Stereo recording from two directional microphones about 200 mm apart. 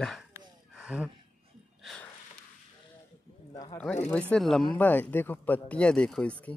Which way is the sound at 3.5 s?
20° left (ahead or behind).